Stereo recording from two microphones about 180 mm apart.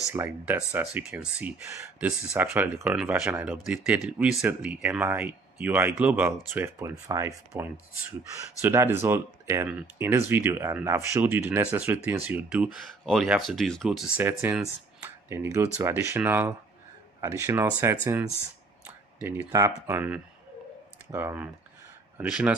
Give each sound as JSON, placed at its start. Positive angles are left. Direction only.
{"t": 0.1, "sound": "speech", "side_deg": -10}
{"t": 19.2, "sound": "speech", "side_deg": -15}